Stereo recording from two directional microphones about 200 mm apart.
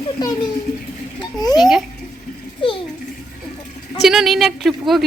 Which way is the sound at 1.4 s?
20° left (ahead or behind).